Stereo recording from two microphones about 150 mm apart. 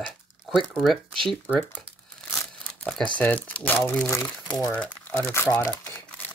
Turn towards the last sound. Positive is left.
turn(degrees=15)  # may be behind; listen again after turning